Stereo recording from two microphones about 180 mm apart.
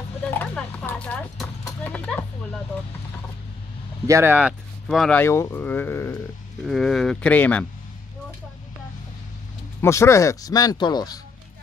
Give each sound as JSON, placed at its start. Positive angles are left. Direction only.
{"t": 0.3, "sound": "clip-clop", "side_deg": 10}
{"t": 4.1, "sound": "speech", "side_deg": -10}
{"t": 5.2, "sound": "speech", "side_deg": 15}
{"t": 6.6, "sound": "speech", "side_deg": 0}
{"t": 9.8, "sound": "speech", "side_deg": 15}